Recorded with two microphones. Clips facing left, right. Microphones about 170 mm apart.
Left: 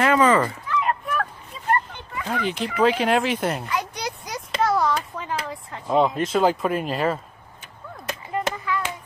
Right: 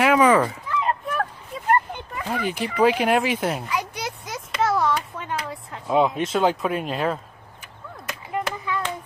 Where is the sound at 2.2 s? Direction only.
5° right (ahead or behind).